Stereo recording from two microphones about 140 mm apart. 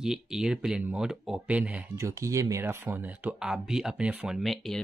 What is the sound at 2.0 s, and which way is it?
Speech, 20° right (ahead or behind).